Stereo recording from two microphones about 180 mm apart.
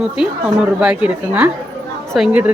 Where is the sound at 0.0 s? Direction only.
5° right (ahead or behind).